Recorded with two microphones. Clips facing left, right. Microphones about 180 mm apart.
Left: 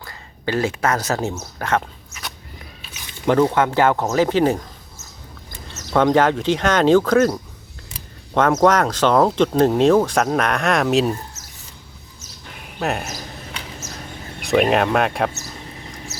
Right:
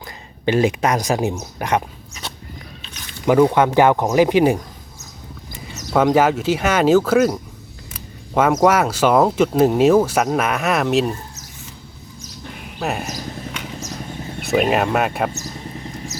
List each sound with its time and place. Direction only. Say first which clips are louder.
0.0 s speech: right 5 dB; 20° right (ahead or behind)
3.2 s speech: right 2 dB; 10° right (ahead or behind)
5.6 s speech: even; 10° right (ahead or behind)
8.6 s speech: even; 10° right (ahead or behind)
12.8 s speech: left 1 dB; centre (ahead or behind)
14.4 s speech: left 1 dB; centre (ahead or behind)